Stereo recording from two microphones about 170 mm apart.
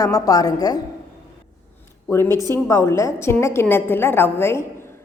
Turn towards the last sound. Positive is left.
turn(degrees=15)  # may be behind; listen again after turning